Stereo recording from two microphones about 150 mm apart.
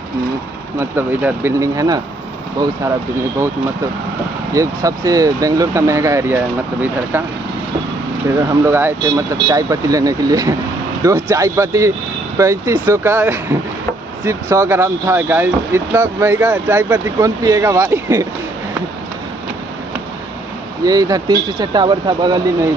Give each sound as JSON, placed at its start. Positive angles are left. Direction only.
{"t": 0.7, "sound": "speech", "side_deg": -15}
{"t": 4.6, "sound": "speech", "side_deg": -25}
{"t": 8.6, "sound": "speech", "side_deg": -15}
{"t": 20.8, "sound": "speech", "side_deg": -25}